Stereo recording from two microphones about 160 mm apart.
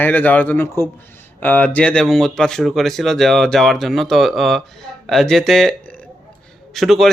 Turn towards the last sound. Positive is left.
turn(degrees=0)  # may be behind; listen again after turning